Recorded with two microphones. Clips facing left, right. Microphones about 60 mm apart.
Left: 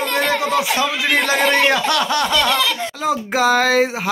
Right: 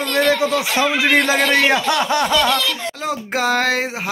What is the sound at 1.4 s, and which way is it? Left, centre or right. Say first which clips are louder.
Speech: even; centre.